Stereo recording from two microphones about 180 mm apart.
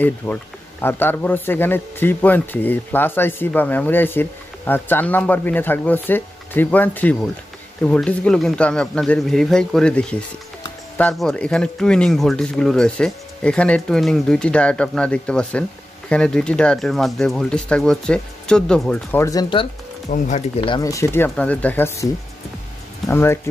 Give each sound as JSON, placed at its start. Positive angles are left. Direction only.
{"t": 0.0, "sound": "a man's voice", "side_deg": 10}
{"t": 19.2, "sound": "speech", "side_deg": 25}
{"t": 20.1, "sound": "speech", "side_deg": 40}
{"t": 20.6, "sound": "a man's voice", "side_deg": 20}